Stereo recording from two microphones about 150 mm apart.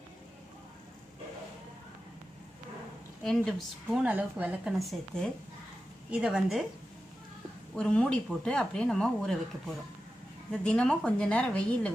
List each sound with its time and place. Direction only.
3.2 s speech: centre (ahead or behind)
4.0 s speech: 10° right (ahead or behind)
7.8 s a woman's voice: 5° left (ahead or behind)